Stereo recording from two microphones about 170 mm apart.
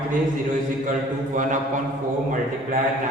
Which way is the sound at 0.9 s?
45° right (ahead or behind).